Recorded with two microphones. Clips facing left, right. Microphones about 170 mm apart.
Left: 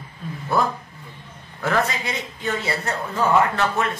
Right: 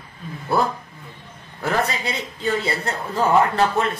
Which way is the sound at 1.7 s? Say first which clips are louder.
Even; 35° right (ahead or behind).